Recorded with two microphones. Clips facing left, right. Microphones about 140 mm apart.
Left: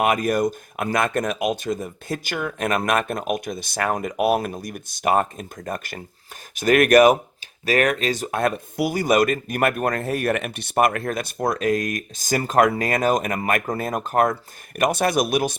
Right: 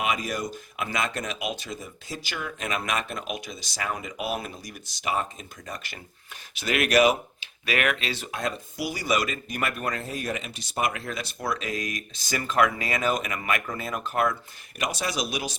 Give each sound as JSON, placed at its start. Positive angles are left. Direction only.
{"t": 0.0, "sound": "speech", "side_deg": 55}
{"t": 7.6, "sound": "speech", "side_deg": 40}
{"t": 8.4, "sound": "speech", "side_deg": 55}